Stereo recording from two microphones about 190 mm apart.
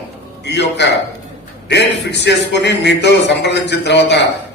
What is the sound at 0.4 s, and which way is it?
A man's voice, 65° left (ahead or behind).